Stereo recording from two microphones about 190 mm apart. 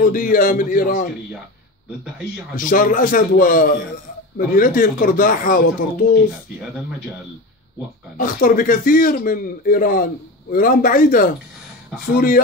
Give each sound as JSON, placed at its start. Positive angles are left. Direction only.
{"t": 0.0, "sound": "speech", "side_deg": 45}
{"t": 2.5, "sound": "speech", "side_deg": 45}
{"t": 8.2, "sound": "speech", "side_deg": 45}